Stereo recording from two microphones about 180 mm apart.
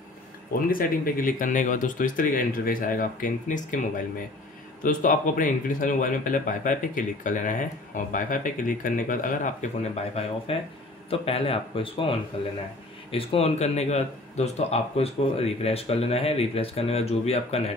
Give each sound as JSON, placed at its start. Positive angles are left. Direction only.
{"t": 0.7, "sound": "speech", "side_deg": 50}
{"t": 4.8, "sound": "speech", "side_deg": 50}
{"t": 10.1, "sound": "speech", "side_deg": 30}